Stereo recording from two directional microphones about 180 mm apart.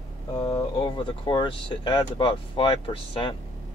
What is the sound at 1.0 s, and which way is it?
Speech, 25° left (ahead or behind).